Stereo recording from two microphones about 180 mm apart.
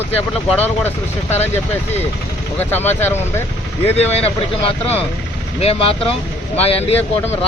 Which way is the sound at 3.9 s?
35° left (ahead or behind).